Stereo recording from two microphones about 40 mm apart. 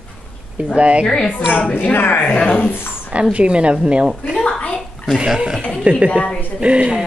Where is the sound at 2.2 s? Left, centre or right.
Left.